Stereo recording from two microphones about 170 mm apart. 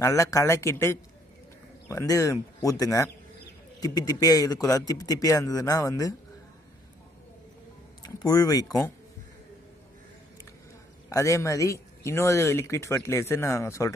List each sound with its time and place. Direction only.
0.0 s speech: 20° left (ahead or behind)
8.0 s speech: 20° left (ahead or behind)
11.1 s speech: 20° left (ahead or behind)